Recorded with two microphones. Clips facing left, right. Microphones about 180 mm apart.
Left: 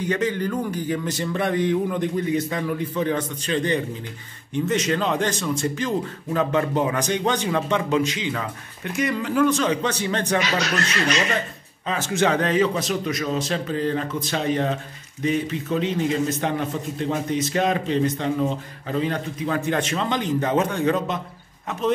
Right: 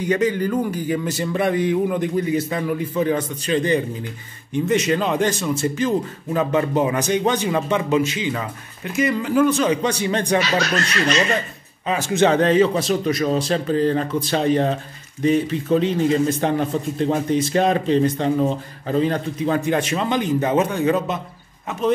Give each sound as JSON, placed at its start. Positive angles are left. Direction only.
{"t": 0.0, "sound": "speech", "side_deg": -10}
{"t": 11.8, "sound": "speech", "side_deg": -10}
{"t": 12.2, "sound": "a man's voice", "side_deg": -30}
{"t": 19.6, "sound": "speech", "side_deg": -10}